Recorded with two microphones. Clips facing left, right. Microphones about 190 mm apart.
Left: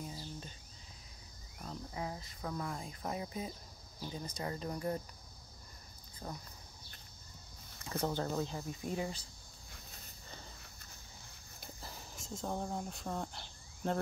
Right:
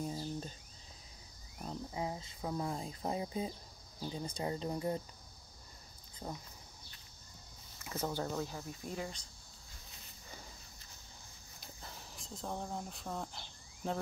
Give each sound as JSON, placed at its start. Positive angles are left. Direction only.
{"t": 0.0, "sound": "a sound", "side_deg": -40}
{"t": 1.6, "sound": "speech", "side_deg": -20}
{"t": 6.2, "sound": "speech", "side_deg": -10}
{"t": 7.9, "sound": "speech", "side_deg": 15}
{"t": 11.8, "sound": "speech", "side_deg": 0}